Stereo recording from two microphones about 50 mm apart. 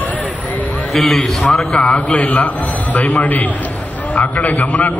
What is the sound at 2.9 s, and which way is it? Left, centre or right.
A man's voice, left.